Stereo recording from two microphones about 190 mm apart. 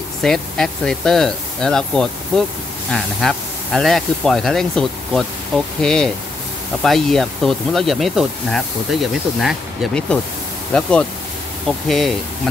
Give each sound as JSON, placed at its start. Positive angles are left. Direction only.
{"t": 0.2, "sound": "speech", "side_deg": 0}